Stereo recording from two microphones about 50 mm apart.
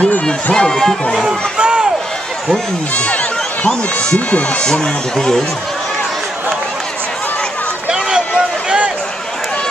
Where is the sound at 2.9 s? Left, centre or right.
Left.